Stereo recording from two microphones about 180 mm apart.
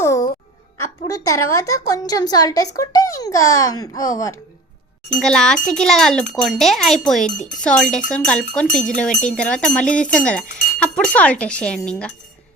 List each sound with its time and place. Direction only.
0.0 s babbling: 15° left (ahead or behind)
0.8 s a woman's voice: 20° left (ahead or behind)
5.2 s speech: 5° left (ahead or behind)